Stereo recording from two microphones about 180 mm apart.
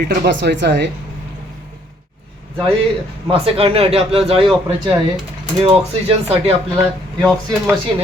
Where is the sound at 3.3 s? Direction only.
30° right (ahead or behind).